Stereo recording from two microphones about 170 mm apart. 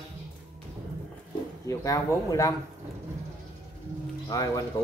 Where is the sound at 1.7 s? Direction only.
20° left (ahead or behind).